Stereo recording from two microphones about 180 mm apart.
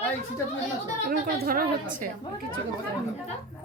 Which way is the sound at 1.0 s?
55° right (ahead or behind).